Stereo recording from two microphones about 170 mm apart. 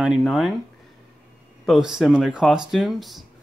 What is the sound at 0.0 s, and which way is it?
Speech, centre (ahead or behind).